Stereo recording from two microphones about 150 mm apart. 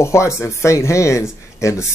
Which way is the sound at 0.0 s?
20° left (ahead or behind).